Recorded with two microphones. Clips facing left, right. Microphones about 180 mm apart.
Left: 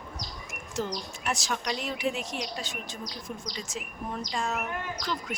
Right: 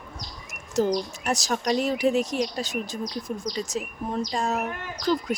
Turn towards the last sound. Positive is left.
turn(degrees=-35)  # may be behind; listen again after turning